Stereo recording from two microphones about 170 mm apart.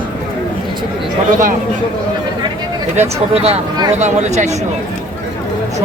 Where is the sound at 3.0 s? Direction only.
40° right (ahead or behind).